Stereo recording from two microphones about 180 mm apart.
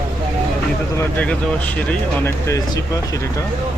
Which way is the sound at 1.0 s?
10° left (ahead or behind).